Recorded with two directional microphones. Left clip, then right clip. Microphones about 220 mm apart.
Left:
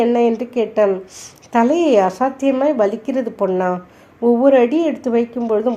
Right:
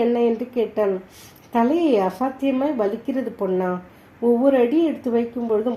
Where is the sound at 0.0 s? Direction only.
25° left (ahead or behind).